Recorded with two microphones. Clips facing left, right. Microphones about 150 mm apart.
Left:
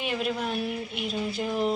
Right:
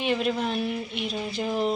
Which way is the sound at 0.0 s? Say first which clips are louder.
Right 4 dB; 5° left (ahead or behind).